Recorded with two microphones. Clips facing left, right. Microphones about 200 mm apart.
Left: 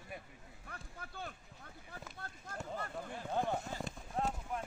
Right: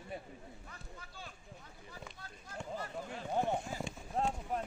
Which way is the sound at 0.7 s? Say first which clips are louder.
Left 2 dB; 55° left (ahead or behind).